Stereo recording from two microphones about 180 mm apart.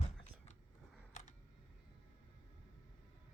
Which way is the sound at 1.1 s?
40° left (ahead or behind).